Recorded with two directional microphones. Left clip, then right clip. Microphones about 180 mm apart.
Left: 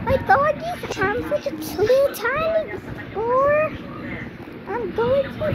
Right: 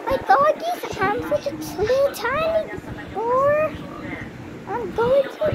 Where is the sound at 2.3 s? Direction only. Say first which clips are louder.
Even; 30° right (ahead or behind).